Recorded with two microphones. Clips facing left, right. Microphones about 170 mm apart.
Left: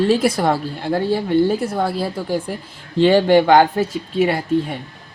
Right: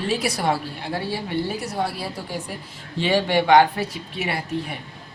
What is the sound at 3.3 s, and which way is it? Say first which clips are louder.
Speech: left 4 dB; 40° left (ahead or behind).